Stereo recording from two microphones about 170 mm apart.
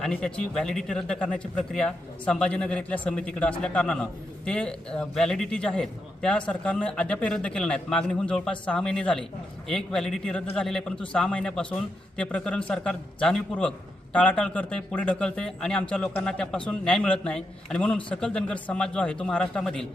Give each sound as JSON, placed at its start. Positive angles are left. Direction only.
{"t": 0.0, "sound": "a man's voice", "side_deg": 5}